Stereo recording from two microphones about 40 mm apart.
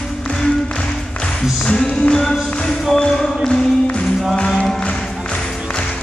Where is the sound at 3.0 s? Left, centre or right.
Centre.